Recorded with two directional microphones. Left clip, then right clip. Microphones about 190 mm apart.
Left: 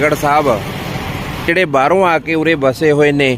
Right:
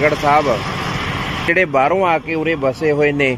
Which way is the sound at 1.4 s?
25° left (ahead or behind).